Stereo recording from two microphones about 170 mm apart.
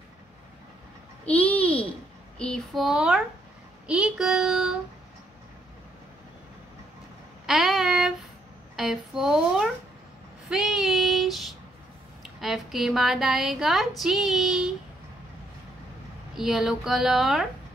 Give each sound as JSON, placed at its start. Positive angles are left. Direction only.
{"t": 1.2, "sound": "a sound", "side_deg": 10}
{"t": 2.3, "sound": "speech", "side_deg": 5}
{"t": 7.4, "sound": "a sound", "side_deg": 0}
{"t": 8.7, "sound": "speech", "side_deg": 0}
{"t": 10.5, "sound": "child singing", "side_deg": 0}
{"t": 12.2, "sound": "speech", "side_deg": 0}
{"t": 16.3, "sound": "speech", "side_deg": 0}